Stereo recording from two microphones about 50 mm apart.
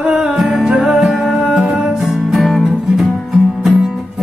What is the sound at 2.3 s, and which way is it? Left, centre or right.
Music, centre.